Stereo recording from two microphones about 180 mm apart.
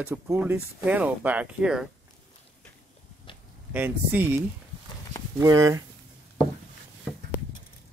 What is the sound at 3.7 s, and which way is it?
Speech, 10° right (ahead or behind).